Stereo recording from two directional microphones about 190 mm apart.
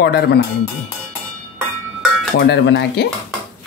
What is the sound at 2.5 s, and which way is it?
Speech, 65° left (ahead or behind).